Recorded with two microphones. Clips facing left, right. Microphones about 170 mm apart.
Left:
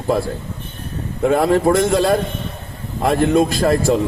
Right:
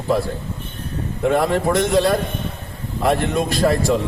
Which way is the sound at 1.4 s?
45° left (ahead or behind).